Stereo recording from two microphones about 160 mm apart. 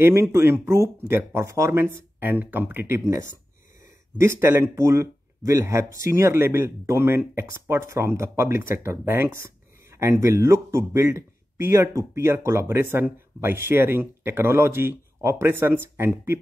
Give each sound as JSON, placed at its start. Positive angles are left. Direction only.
{"t": 0.0, "sound": "speech", "side_deg": -15}